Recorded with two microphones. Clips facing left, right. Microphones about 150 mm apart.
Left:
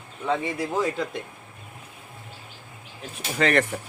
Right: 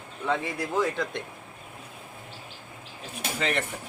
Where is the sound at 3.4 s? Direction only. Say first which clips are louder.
Left 8 dB; 75° left (ahead or behind).